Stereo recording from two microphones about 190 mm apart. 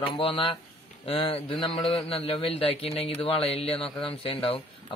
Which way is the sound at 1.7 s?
Centre (ahead or behind).